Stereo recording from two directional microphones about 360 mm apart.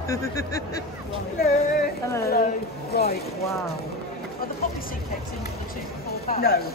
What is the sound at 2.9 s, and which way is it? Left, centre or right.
Speech, left.